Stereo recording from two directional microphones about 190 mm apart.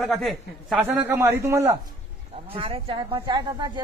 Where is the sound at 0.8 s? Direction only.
10° right (ahead or behind).